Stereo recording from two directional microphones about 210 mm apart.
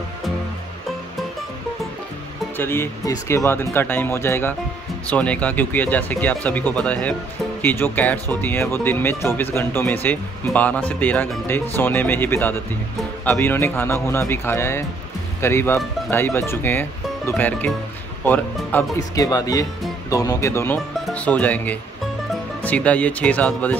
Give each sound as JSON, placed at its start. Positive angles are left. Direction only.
{"t": 2.5, "sound": "speech", "side_deg": 10}